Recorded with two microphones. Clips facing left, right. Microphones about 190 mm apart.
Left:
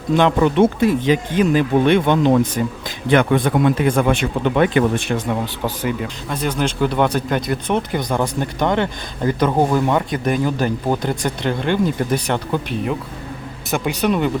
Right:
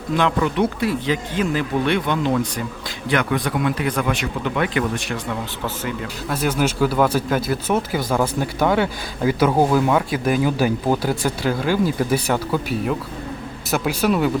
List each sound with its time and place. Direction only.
0.2 s speech: 25° left (ahead or behind)
6.2 s speech: 5° right (ahead or behind)